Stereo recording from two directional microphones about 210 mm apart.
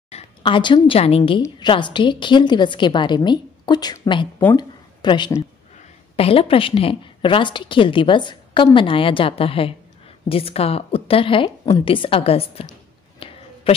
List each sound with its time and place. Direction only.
0.1 s a woman's voice: 25° left (ahead or behind)
13.2 s a sound: 25° left (ahead or behind)
13.7 s a man's voice: 25° left (ahead or behind)